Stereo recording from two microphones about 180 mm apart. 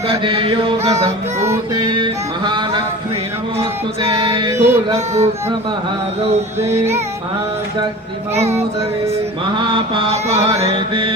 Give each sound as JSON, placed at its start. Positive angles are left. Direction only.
{"t": 0.1, "sound": "chant", "side_deg": -30}
{"t": 1.8, "sound": "music", "side_deg": -25}
{"t": 4.5, "sound": "music", "side_deg": -15}
{"t": 4.9, "sound": "chant", "side_deg": -35}
{"t": 6.6, "sound": "music", "side_deg": -15}
{"t": 8.4, "sound": "chant", "side_deg": -35}
{"t": 9.6, "sound": "music", "side_deg": -30}
{"t": 10.6, "sound": "chant", "side_deg": -30}